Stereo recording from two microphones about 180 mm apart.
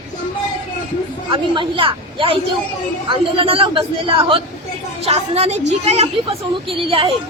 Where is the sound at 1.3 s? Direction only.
30° right (ahead or behind).